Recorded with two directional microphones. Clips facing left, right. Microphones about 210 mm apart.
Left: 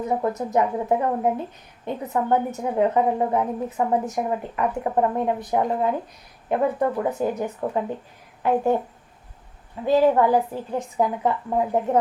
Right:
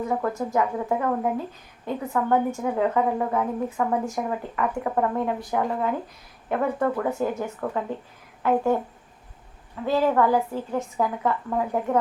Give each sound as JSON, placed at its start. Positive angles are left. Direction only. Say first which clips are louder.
{"t": 0.0, "sound": "a woman's voice", "louder": "left 2 dB", "side_deg": 20}
{"t": 9.8, "sound": "a woman's voice", "louder": "left 3 dB", "side_deg": 20}